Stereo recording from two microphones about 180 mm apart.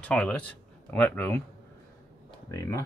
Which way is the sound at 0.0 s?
5° left (ahead or behind).